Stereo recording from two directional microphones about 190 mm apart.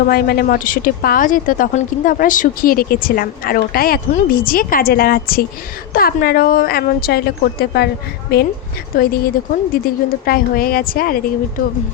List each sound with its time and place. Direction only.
0.1 s speech: 50° left (ahead or behind)